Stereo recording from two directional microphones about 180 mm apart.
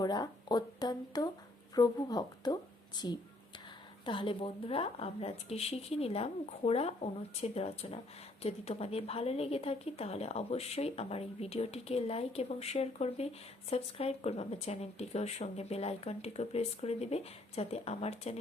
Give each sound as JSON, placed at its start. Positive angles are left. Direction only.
{"t": 0.0, "sound": "a woman's voice", "side_deg": 25}